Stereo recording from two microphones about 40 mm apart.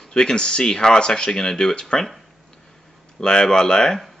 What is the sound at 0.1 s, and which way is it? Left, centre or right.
Speech, centre.